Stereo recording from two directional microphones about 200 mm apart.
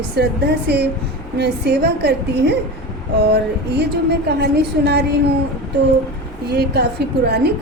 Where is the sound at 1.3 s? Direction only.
55° right (ahead or behind).